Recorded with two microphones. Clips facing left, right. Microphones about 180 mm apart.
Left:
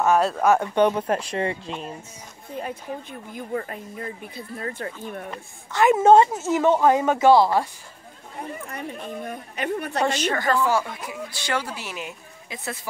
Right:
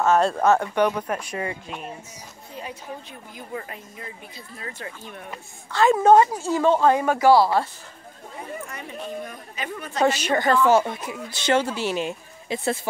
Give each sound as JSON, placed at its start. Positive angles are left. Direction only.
{"t": 0.0, "sound": "speech", "side_deg": 10}
{"t": 0.7, "sound": "a woman's voice", "side_deg": 25}
{"t": 2.5, "sound": "a woman's voice", "side_deg": 50}
{"t": 5.7, "sound": "a woman's voice", "side_deg": 20}
{"t": 8.6, "sound": "speech", "side_deg": 55}
{"t": 10.0, "sound": "a woman's voice", "side_deg": -10}
{"t": 10.7, "sound": "speech", "side_deg": -20}